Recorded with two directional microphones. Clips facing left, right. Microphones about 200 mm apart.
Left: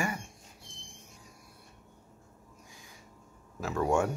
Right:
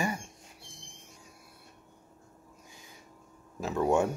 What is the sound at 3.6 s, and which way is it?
Speech, 20° right (ahead or behind).